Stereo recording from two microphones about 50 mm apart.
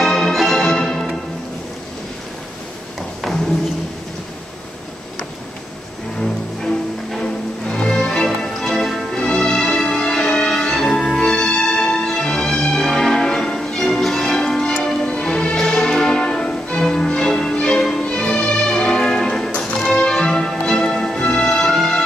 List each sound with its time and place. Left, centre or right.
0.0 s music: centre
3.2 s a sound: centre
6.2 s music: centre
9.1 s music: centre